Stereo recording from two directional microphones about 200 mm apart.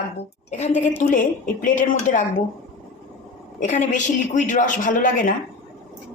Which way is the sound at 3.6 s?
35° left (ahead or behind).